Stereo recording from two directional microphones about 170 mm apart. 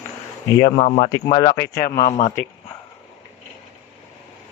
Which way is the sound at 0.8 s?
40° left (ahead or behind).